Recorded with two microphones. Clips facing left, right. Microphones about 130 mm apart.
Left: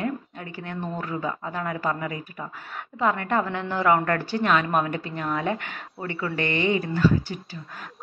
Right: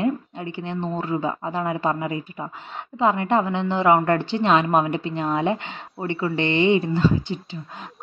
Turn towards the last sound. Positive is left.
turn(degrees=-25)  # may be behind; listen again after turning